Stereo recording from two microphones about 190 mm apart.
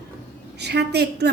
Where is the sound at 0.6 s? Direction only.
60° right (ahead or behind).